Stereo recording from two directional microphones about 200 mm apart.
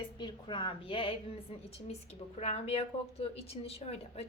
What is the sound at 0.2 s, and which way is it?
A woman's voice, 25° left (ahead or behind).